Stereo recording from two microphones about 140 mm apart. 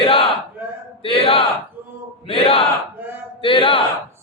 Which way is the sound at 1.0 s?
40° left (ahead or behind).